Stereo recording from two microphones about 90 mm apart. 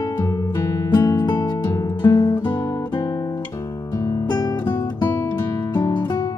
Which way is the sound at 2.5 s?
55° left (ahead or behind).